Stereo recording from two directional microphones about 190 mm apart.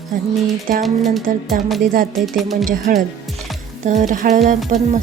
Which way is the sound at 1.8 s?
45° right (ahead or behind).